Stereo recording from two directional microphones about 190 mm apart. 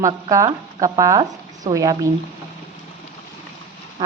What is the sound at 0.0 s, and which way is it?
Speech, 15° right (ahead or behind).